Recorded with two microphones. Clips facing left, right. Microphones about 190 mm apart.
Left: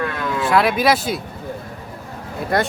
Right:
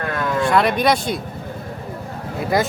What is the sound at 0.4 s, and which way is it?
Speech, 5° left (ahead or behind).